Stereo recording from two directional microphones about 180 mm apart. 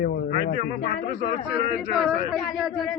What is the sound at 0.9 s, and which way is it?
Speech, 50° left (ahead or behind).